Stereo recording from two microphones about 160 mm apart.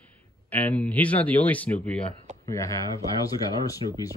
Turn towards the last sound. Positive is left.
turn(degrees=20)  # may be behind; listen again after turning